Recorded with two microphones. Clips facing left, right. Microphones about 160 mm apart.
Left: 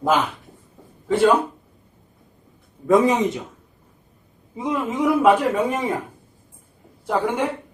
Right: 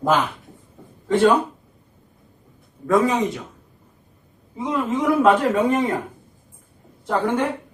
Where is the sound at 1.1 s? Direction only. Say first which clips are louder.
Even; 5° left (ahead or behind).